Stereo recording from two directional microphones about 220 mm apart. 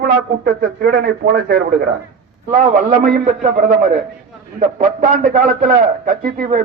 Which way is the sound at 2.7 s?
40° right (ahead or behind).